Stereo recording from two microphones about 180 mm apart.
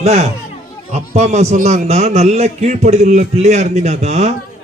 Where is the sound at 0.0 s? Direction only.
40° right (ahead or behind).